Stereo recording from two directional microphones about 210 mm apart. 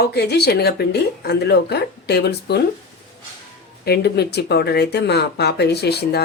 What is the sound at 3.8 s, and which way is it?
Speech, 50° left (ahead or behind).